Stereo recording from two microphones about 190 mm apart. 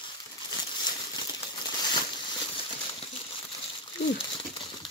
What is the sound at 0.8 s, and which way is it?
Crumpling, 20° left (ahead or behind).